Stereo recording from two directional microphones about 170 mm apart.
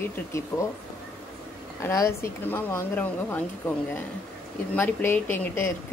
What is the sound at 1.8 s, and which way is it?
Speech, 15° left (ahead or behind).